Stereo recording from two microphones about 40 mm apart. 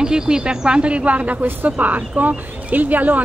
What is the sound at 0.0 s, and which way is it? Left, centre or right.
Speech, centre.